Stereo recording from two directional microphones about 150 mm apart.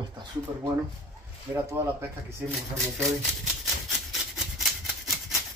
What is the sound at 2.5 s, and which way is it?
Speech, centre (ahead or behind).